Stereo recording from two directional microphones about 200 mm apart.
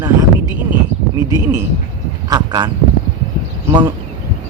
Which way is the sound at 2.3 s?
25° right (ahead or behind).